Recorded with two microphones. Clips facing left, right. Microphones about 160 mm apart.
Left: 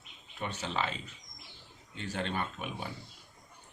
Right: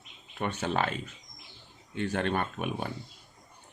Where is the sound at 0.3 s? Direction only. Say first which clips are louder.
Right 6 dB; 55° right (ahead or behind).